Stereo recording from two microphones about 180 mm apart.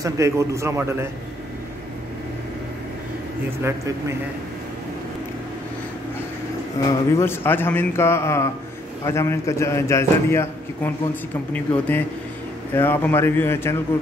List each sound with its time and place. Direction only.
0.0 s a man's voice: 15° right (ahead or behind)
3.6 s a man's voice: 15° right (ahead or behind)
6.9 s a man's voice: 15° left (ahead or behind)